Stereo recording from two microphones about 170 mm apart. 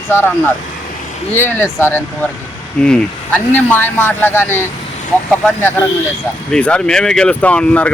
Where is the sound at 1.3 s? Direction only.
10° left (ahead or behind).